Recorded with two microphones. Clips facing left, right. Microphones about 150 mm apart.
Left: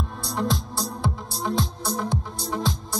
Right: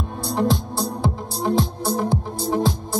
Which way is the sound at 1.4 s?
30° right (ahead or behind).